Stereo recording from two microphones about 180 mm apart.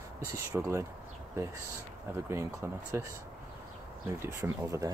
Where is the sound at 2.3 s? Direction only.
15° right (ahead or behind).